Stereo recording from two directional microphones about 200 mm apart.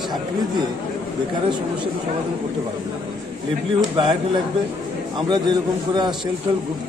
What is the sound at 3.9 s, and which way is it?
Speech, 20° right (ahead or behind).